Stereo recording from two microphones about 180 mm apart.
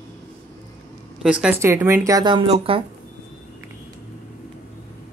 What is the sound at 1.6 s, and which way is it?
Speech, 15° right (ahead or behind).